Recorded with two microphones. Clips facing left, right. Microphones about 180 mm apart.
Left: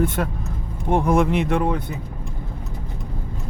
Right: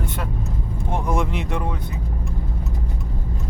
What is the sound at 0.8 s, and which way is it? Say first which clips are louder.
Speech: left 6 dB; 60° left (ahead or behind).